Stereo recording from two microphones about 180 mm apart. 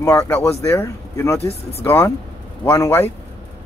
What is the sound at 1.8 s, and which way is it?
Speech, 10° left (ahead or behind).